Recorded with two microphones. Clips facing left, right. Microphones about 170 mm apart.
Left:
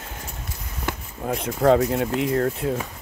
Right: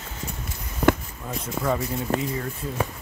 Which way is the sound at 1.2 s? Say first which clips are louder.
Left 8 dB; 65° left (ahead or behind).